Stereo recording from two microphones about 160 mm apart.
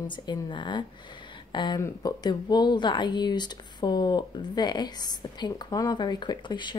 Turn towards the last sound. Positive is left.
turn(degrees=30)  # may be behind; listen again after turning